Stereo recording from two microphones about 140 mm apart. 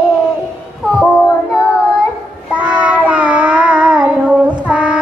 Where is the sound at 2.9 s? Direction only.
10° right (ahead or behind).